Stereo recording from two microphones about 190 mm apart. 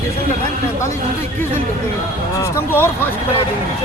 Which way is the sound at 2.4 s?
15° left (ahead or behind).